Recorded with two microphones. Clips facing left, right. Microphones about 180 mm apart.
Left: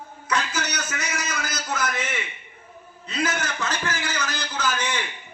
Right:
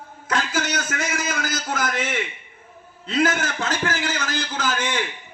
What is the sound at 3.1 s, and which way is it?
A man's voice, 50° right (ahead or behind).